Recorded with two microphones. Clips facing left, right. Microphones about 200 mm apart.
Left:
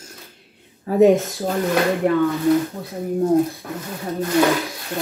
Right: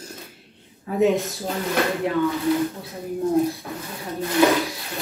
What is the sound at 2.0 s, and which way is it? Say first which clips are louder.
Speech: left 5 dB; 50° left (ahead or behind).